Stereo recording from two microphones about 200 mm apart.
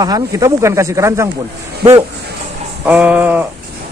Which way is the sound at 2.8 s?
5° right (ahead or behind).